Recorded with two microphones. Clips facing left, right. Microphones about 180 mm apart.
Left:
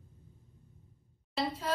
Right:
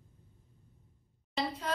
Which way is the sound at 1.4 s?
5° left (ahead or behind).